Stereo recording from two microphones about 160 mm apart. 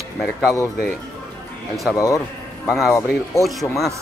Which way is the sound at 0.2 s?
Centre (ahead or behind).